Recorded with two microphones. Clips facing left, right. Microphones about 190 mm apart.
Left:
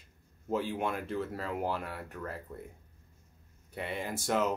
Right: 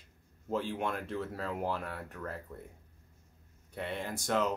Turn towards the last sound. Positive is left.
turn(degrees=5)  # may be behind; listen again after turning